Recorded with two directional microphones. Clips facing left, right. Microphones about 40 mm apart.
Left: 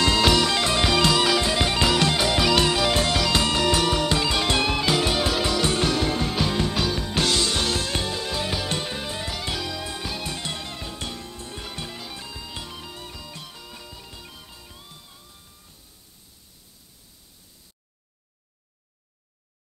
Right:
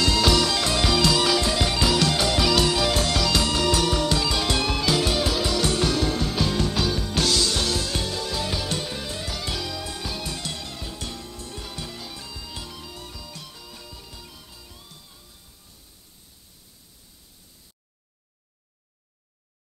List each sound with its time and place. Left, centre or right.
0.0 s music: left